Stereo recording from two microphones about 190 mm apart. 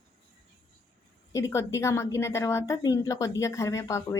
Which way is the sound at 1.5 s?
15° left (ahead or behind).